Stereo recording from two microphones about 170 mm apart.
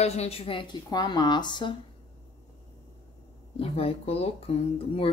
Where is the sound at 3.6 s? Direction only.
35° left (ahead or behind).